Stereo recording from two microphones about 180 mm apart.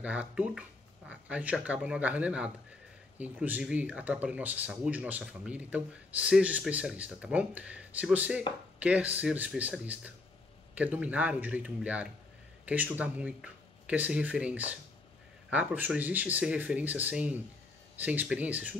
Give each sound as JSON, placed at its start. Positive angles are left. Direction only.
{"t": 0.0, "sound": "speech", "side_deg": -5}